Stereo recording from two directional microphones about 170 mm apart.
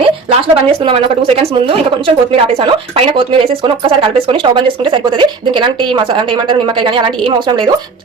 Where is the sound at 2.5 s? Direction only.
30° right (ahead or behind).